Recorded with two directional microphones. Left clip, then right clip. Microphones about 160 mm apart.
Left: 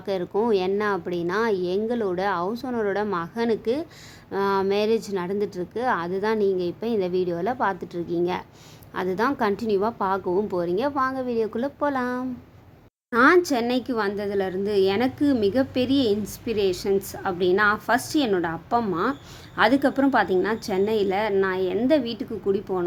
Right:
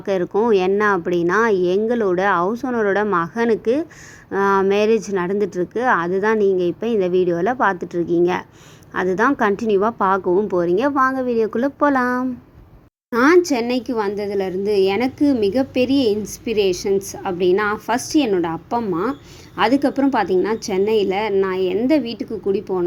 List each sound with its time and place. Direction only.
0.0 s a woman's voice: 15° right (ahead or behind)